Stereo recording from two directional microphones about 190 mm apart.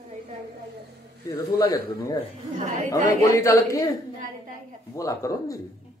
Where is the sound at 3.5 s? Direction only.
15° left (ahead or behind).